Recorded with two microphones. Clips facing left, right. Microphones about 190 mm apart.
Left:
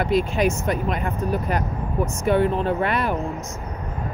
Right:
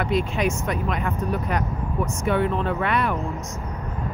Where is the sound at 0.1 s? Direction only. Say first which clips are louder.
Left 4 dB; centre (ahead or behind).